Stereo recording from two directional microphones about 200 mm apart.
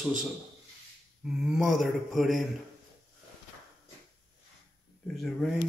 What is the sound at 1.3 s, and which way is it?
A man's voice, 5° right (ahead or behind).